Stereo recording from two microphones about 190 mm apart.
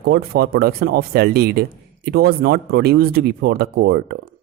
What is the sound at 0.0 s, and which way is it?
Speech, 55° right (ahead or behind).